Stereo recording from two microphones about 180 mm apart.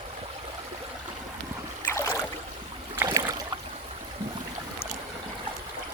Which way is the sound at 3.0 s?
20° right (ahead or behind).